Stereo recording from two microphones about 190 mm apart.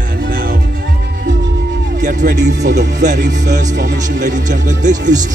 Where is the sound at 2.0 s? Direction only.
40° right (ahead or behind).